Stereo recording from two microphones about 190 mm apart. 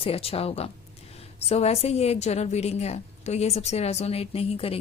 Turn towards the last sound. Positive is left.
turn(degrees=30)  # may be behind; listen again after turning